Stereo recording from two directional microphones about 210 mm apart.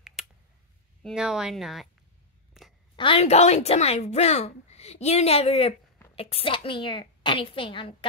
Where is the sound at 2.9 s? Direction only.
25° left (ahead or behind).